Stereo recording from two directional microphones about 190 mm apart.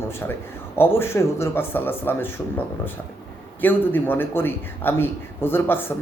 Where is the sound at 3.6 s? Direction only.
10° left (ahead or behind).